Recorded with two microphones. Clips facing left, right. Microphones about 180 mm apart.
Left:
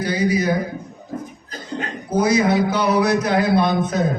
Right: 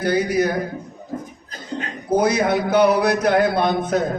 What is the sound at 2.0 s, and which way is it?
A man's voice, 55° right (ahead or behind).